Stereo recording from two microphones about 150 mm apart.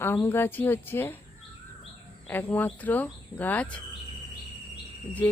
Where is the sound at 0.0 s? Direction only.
15° left (ahead or behind).